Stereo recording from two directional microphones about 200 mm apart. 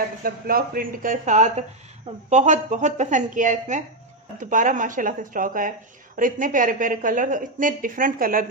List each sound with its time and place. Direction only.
0.2 s speech: 45° right (ahead or behind)